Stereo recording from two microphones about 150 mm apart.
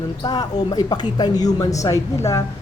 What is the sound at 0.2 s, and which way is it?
Speech, 25° left (ahead or behind).